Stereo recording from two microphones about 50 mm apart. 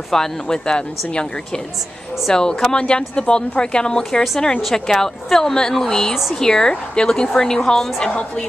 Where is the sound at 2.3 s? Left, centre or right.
Centre.